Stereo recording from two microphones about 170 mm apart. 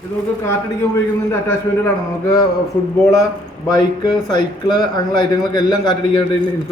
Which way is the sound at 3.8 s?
25° left (ahead or behind).